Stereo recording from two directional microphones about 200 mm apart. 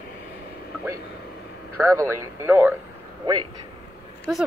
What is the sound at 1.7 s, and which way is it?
Speech, 15° right (ahead or behind).